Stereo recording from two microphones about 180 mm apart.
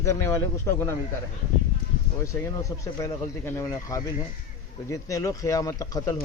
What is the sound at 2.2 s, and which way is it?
Speech, 15° left (ahead or behind).